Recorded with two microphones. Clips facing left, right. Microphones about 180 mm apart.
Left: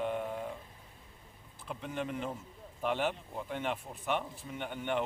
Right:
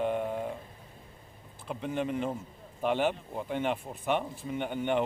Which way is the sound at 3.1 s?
15° right (ahead or behind).